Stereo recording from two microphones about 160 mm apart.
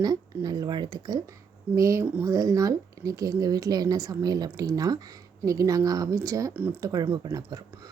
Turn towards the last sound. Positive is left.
turn(degrees=-25)  # may be behind; listen again after turning